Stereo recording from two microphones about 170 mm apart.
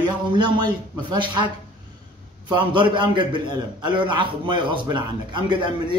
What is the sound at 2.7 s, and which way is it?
A man's voice, 25° right (ahead or behind).